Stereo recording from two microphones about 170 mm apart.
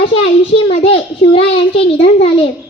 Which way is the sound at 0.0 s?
35° left (ahead or behind).